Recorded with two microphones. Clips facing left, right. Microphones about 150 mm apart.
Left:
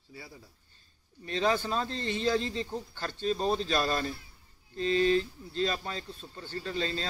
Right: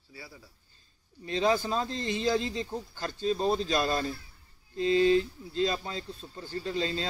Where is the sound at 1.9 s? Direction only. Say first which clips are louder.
Even; 35° left (ahead or behind).